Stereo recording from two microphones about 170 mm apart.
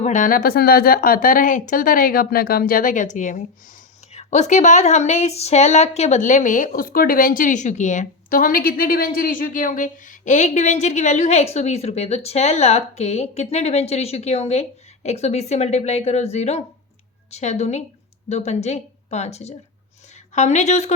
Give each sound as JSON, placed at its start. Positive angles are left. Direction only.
{"t": 0.0, "sound": "a woman's voice", "side_deg": 50}